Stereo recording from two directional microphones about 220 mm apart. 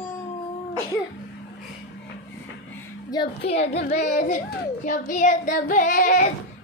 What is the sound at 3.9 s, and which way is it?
Child singing, 35° left (ahead or behind).